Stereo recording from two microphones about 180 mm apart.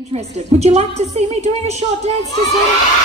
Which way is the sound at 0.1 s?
35° right (ahead or behind).